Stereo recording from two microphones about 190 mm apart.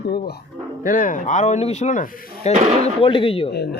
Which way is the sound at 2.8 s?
25° left (ahead or behind).